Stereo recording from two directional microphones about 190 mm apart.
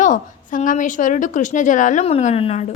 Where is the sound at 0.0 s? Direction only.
40° left (ahead or behind).